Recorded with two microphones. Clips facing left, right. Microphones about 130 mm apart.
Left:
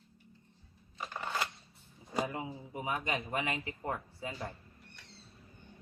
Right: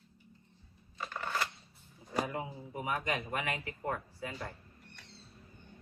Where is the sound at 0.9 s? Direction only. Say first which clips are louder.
Even; 20° left (ahead or behind).